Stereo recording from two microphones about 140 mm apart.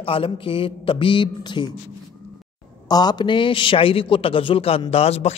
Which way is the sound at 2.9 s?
30° left (ahead or behind).